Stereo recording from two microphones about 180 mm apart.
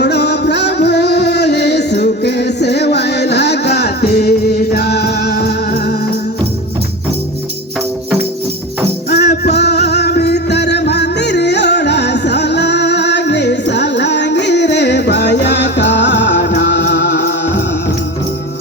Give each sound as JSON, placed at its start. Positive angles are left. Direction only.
{"t": 0.0, "sound": "music", "side_deg": 70}
{"t": 9.0, "sound": "music", "side_deg": 60}